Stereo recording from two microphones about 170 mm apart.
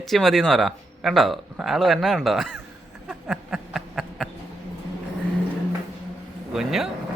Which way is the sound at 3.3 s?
Centre (ahead or behind).